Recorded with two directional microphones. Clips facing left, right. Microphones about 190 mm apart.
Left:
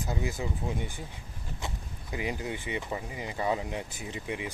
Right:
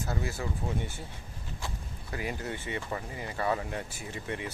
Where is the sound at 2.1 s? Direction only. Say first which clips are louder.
Left 2 dB; 15° left (ahead or behind).